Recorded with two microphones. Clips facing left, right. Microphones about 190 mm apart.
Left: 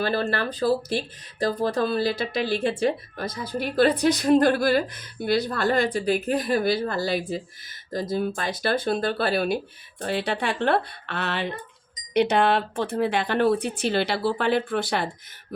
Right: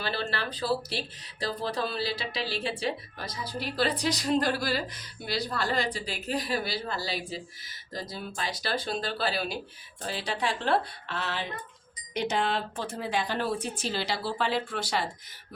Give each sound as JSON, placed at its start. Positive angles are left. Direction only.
{"t": 0.0, "sound": "speech", "side_deg": 50}